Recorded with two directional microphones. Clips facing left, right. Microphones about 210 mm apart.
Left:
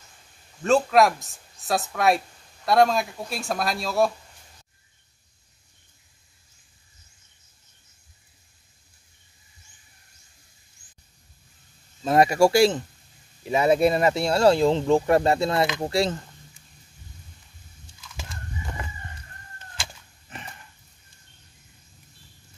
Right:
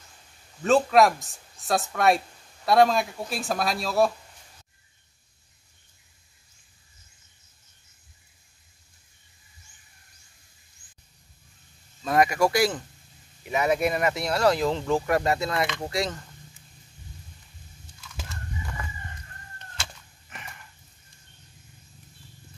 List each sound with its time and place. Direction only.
0.6 s speech: centre (ahead or behind)
12.0 s speech: 30° left (ahead or behind)
20.3 s a sound: 30° left (ahead or behind)